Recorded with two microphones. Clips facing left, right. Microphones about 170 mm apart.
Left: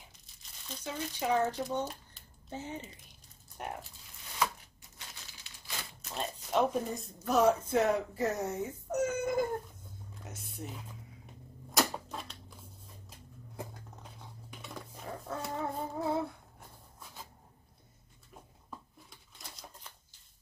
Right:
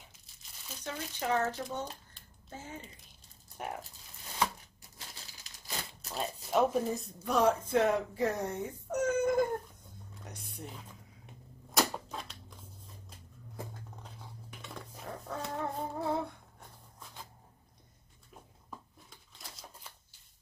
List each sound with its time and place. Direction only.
0.8 s speech: 10° left (ahead or behind)
3.6 s speech: centre (ahead or behind)
6.1 s speech: 5° right (ahead or behind)
9.2 s a sound: 5° left (ahead or behind)
10.2 s speech: centre (ahead or behind)
11.7 s a sound: centre (ahead or behind)
14.6 s dog: centre (ahead or behind)
19.0 s typewriter: centre (ahead or behind)